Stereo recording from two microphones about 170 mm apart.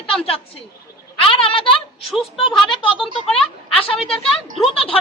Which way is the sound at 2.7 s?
30° left (ahead or behind).